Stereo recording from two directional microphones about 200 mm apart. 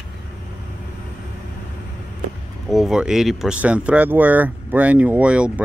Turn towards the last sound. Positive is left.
turn(degrees=-5)  # may be behind; listen again after turning